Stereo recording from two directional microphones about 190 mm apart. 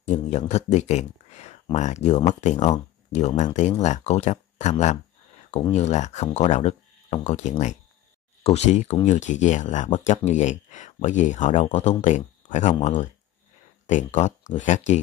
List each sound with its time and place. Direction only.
0.0 s speech: 35° left (ahead or behind)